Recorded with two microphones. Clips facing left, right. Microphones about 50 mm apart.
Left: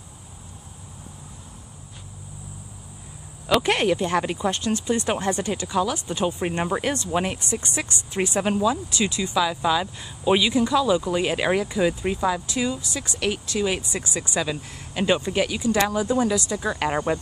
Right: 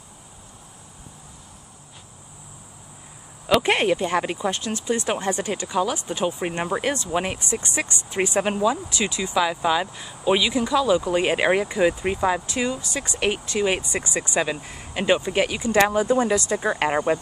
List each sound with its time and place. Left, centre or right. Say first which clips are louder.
3.6 s speech: right 1 dB; centre
5.3 s speech: even; right
7.5 s speech: right 1 dB; right
10.0 s speech: left 1 dB; centre
11.1 s speech: right 2 dB; right
15.3 s speech: right 2 dB; right
16.9 s speech: right 2 dB; centre